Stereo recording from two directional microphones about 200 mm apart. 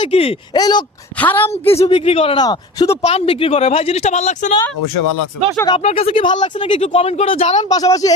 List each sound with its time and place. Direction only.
0.0 s speech: 30° left (ahead or behind)
1.2 s a woman's voice: 10° left (ahead or behind)
1.8 s speech: 30° left (ahead or behind)
3.0 s speech: 30° left (ahead or behind)
5.5 s speech: 20° left (ahead or behind)
7.7 s a woman's voice: 20° left (ahead or behind)